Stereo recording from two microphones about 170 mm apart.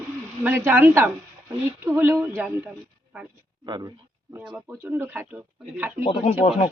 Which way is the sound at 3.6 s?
25° right (ahead or behind).